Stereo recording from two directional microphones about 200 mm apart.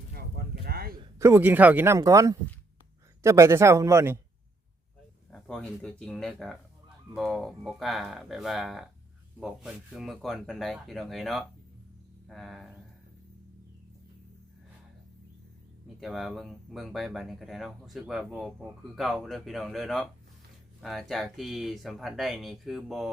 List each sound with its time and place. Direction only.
0.1 s a sound: 50° right (ahead or behind)
1.2 s speech: 10° right (ahead or behind)
5.3 s speech: 5° left (ahead or behind)
16.0 s speech: centre (ahead or behind)